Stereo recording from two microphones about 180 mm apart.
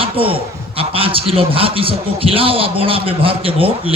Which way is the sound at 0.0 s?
30° right (ahead or behind).